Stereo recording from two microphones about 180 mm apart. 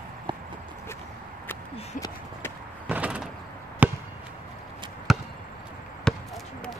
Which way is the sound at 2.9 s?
5° right (ahead or behind).